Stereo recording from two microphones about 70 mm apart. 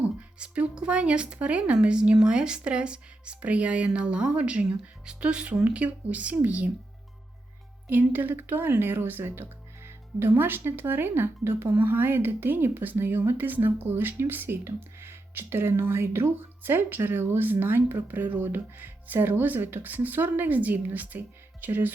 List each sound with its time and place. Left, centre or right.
0.2 s speech: centre
7.9 s speech: right